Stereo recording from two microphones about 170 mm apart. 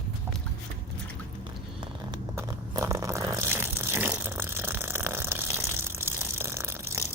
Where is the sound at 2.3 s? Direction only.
20° right (ahead or behind).